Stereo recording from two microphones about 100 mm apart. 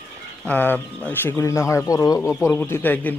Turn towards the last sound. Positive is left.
turn(degrees=15)  # may be behind; listen again after turning